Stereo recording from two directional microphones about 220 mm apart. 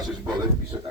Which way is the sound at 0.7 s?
15° right (ahead or behind).